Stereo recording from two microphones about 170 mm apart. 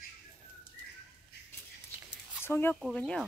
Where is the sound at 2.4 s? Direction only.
15° left (ahead or behind).